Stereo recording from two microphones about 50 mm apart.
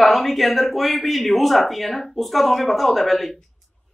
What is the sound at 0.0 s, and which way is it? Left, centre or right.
Speech, centre.